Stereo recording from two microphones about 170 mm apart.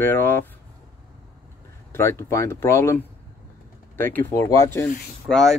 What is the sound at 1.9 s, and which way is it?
Speech, 15° left (ahead or behind).